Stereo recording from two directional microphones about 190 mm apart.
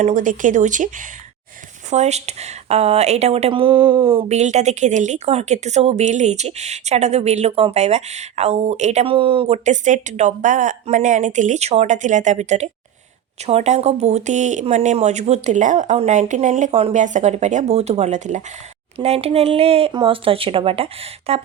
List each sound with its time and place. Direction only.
0.0 s speech: 40° right (ahead or behind)